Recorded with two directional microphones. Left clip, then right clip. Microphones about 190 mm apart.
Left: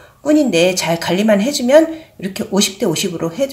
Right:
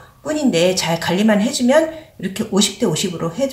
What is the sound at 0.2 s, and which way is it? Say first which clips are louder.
Speech: left 4 dB; 40° left (ahead or behind).